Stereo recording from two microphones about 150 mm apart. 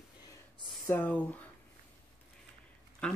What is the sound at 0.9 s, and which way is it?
Speech, 10° left (ahead or behind).